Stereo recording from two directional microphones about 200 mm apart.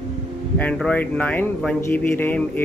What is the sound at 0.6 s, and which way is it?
Speech, 5° left (ahead or behind).